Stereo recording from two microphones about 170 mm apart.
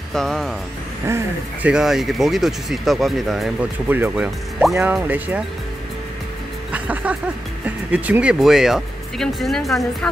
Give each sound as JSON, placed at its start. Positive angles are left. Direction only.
{"t": 0.1, "sound": "speech", "side_deg": 0}
{"t": 1.0, "sound": "speech", "side_deg": -15}
{"t": 1.7, "sound": "speech", "side_deg": 0}
{"t": 3.8, "sound": "speech", "side_deg": -10}
{"t": 6.7, "sound": "music", "side_deg": -10}
{"t": 7.6, "sound": "speech", "side_deg": -10}